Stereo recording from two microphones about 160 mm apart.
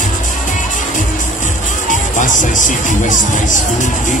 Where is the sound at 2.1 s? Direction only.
55° left (ahead or behind).